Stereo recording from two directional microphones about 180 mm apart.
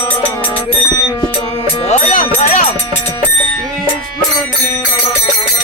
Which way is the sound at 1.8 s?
40° left (ahead or behind).